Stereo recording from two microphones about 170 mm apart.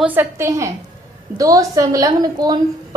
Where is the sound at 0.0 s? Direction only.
10° right (ahead or behind).